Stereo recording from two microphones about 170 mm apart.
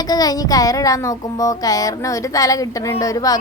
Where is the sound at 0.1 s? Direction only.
20° left (ahead or behind).